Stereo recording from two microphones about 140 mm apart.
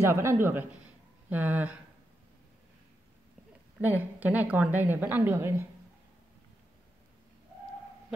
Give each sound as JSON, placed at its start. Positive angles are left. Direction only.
{"t": 0.0, "sound": "speech", "side_deg": -20}
{"t": 3.8, "sound": "speech", "side_deg": -10}